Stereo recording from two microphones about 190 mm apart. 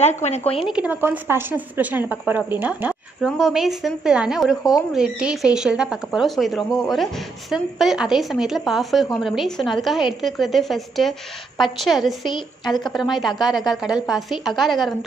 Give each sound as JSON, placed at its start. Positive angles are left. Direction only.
{"t": 0.0, "sound": "speech", "side_deg": 35}
{"t": 0.7, "sound": "a woman's voice", "side_deg": -5}